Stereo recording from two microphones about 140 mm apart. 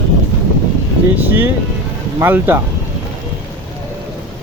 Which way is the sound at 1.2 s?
15° right (ahead or behind).